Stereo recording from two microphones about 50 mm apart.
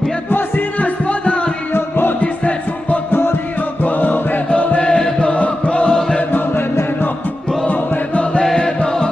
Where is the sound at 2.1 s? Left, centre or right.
Left.